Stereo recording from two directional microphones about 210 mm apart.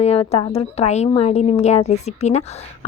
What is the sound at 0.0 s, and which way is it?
A woman's voice, 30° left (ahead or behind).